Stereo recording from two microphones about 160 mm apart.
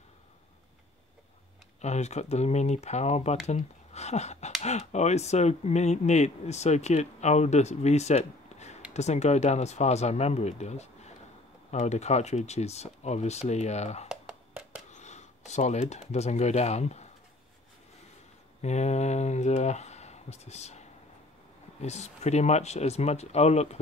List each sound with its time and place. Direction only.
1.8 s speech: 45° left (ahead or behind)
14.0 s a sound: 5° right (ahead or behind)
14.9 s speech: 45° left (ahead or behind)
18.6 s speech: 45° left (ahead or behind)
21.8 s speech: 45° left (ahead or behind)